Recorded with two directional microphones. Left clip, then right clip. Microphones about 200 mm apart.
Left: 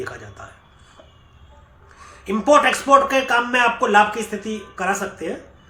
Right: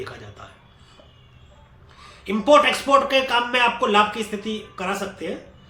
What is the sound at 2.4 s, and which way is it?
Speech, 15° left (ahead or behind).